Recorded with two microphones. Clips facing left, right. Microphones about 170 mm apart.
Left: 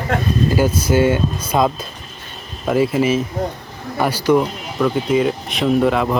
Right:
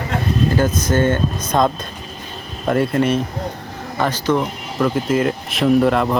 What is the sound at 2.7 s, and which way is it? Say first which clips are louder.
Speech: left 1 dB; 5° left (ahead or behind).